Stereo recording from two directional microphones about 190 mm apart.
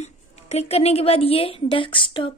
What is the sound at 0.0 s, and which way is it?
A woman's voice, 35° left (ahead or behind).